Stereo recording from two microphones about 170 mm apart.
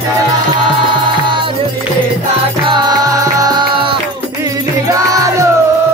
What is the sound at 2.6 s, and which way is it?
Music, 25° right (ahead or behind).